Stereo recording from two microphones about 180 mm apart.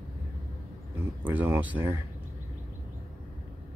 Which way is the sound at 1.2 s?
10° right (ahead or behind).